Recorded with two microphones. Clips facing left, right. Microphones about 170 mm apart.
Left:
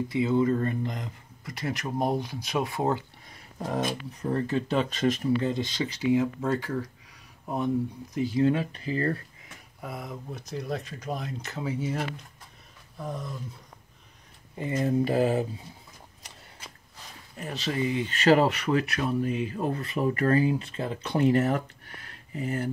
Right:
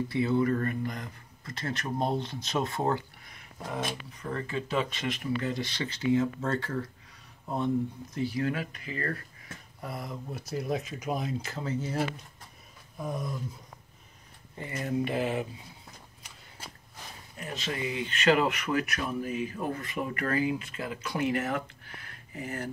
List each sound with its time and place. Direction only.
0.1 s speech: 15° left (ahead or behind)
3.3 s speech: 40° left (ahead or behind)
5.4 s speech: 20° left (ahead or behind)
9.8 s speech: centre (ahead or behind)
11.6 s speech: 10° left (ahead or behind)
13.0 s a sound: 10° right (ahead or behind)
14.7 s speech: 30° left (ahead or behind)
17.4 s speech: 35° left (ahead or behind)